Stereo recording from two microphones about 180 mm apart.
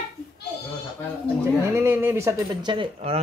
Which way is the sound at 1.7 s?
15° right (ahead or behind).